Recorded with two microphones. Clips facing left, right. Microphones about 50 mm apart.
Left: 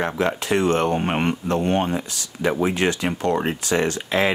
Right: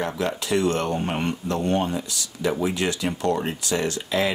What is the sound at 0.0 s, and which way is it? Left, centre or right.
Speech, left.